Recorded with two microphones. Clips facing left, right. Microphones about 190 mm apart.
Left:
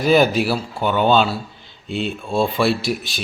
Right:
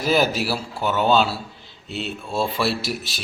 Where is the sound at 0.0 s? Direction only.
Centre (ahead or behind).